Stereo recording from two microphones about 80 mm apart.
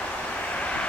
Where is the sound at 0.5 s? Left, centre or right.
Centre.